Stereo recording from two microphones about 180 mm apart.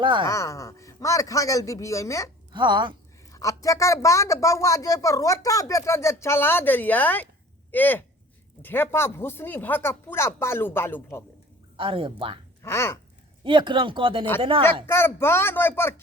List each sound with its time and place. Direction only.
0.0 s speech: 25° right (ahead or behind)
0.3 s speech: 15° left (ahead or behind)
2.5 s speech: 25° right (ahead or behind)
3.2 s speech: 15° left (ahead or behind)
11.8 s speech: 30° right (ahead or behind)
12.6 s speech: 15° left (ahead or behind)
13.4 s speech: 25° right (ahead or behind)
14.8 s speech: 15° left (ahead or behind)